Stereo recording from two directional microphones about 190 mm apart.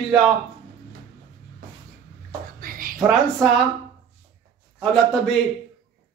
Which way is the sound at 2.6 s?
50° right (ahead or behind).